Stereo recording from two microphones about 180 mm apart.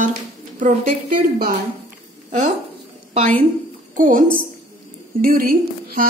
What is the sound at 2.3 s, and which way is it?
Speech, 40° right (ahead or behind).